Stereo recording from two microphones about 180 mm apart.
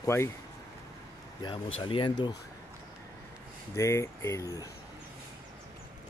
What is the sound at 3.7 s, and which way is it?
Speech, 15° left (ahead or behind).